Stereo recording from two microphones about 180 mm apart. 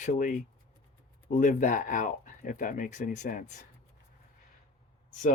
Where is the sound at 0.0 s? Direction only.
45° left (ahead or behind).